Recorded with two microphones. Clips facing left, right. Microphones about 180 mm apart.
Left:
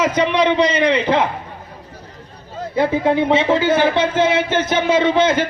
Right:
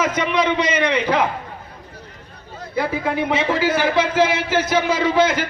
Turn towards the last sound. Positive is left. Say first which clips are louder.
# left 3 dB
turn(degrees=25)  # may be behind; listen again after turning